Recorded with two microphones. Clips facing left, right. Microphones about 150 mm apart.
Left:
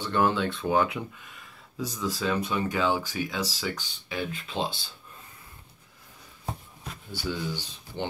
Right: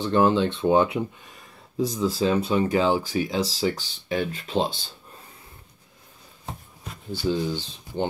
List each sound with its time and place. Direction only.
0.0 s speech: 20° right (ahead or behind)
7.1 s speech: 20° right (ahead or behind)